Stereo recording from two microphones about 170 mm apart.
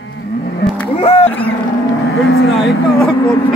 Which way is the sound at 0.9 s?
30° left (ahead or behind).